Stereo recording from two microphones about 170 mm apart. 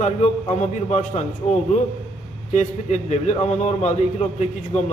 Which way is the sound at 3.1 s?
40° left (ahead or behind).